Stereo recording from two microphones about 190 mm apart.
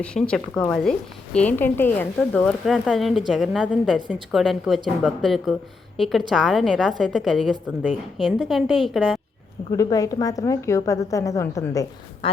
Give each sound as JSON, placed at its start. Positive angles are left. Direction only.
{"t": 0.0, "sound": "a woman's voice", "side_deg": 5}
{"t": 9.7, "sound": "a woman's voice", "side_deg": 20}
{"t": 12.2, "sound": "speech", "side_deg": 30}